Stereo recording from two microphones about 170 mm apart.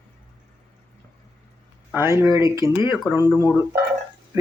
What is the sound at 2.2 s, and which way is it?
Speech, 20° right (ahead or behind).